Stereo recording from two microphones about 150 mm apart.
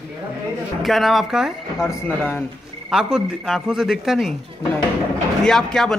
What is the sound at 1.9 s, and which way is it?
Speech, 15° left (ahead or behind).